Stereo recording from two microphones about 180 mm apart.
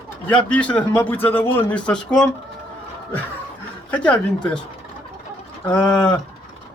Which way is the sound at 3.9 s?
5° left (ahead or behind).